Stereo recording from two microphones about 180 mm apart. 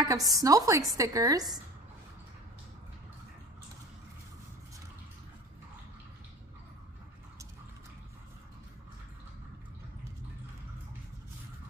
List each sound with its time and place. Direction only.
0.0 s a woman's voice: 20° right (ahead or behind)